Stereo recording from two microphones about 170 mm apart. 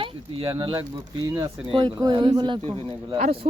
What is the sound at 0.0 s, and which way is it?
Speech, 30° right (ahead or behind).